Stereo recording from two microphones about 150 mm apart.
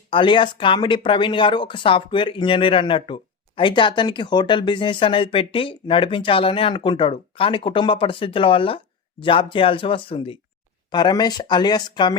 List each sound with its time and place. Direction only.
0.1 s speech: 35° left (ahead or behind)